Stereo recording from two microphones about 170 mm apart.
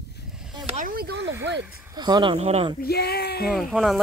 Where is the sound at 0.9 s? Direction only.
65° right (ahead or behind).